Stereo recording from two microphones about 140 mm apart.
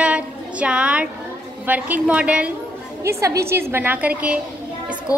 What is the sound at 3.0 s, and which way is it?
A woman's voice, 20° right (ahead or behind).